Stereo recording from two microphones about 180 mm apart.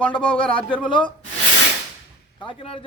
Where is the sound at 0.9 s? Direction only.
25° left (ahead or behind).